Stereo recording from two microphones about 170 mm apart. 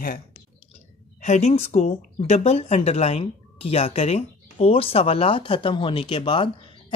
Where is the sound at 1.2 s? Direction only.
40° left (ahead or behind).